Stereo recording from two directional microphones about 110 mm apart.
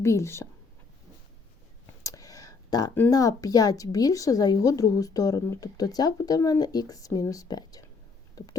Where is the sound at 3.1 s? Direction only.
35° left (ahead or behind).